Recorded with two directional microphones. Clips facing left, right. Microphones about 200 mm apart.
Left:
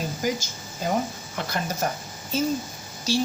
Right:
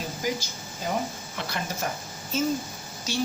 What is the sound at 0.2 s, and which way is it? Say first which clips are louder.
A woman's voice: left 2 dB; 45° left (ahead or behind).